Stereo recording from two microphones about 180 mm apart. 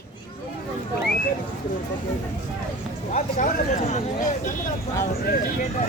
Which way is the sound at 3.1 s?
35° left (ahead or behind).